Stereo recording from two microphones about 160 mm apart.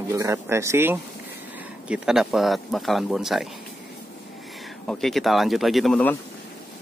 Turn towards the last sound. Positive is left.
turn(degrees=5)  # may be behind; listen again after turning